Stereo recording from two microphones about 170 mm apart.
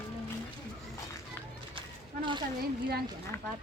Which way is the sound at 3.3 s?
15° left (ahead or behind).